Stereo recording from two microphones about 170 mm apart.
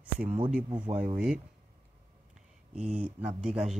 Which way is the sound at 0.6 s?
25° right (ahead or behind).